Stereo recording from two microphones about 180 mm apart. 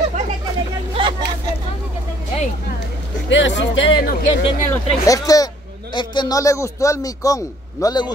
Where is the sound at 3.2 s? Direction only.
90° left.